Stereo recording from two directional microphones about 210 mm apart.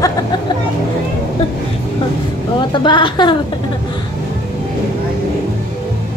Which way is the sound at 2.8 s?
20° left (ahead or behind).